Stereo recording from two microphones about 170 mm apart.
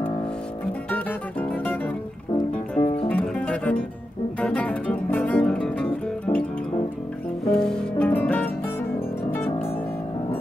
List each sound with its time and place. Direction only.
0.8 s music: 10° left (ahead or behind)
2.3 s music: 25° left (ahead or behind)
3.1 s music: 10° left (ahead or behind)
7.5 s music: 5° left (ahead or behind)